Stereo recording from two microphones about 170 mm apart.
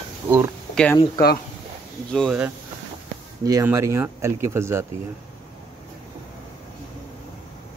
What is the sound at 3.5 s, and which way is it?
Speech, 15° right (ahead or behind).